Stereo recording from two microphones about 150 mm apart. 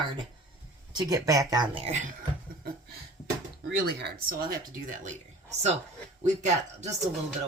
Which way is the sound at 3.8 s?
90° right.